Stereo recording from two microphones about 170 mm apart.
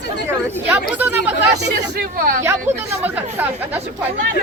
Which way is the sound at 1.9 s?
60° right (ahead or behind).